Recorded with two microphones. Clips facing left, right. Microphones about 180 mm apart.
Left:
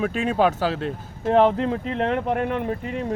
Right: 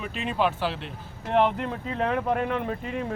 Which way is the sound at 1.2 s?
35° left (ahead or behind).